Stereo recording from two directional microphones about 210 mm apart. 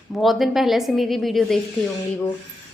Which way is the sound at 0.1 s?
Centre (ahead or behind).